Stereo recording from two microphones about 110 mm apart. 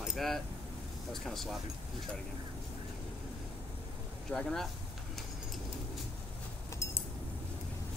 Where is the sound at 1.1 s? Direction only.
5° left (ahead or behind).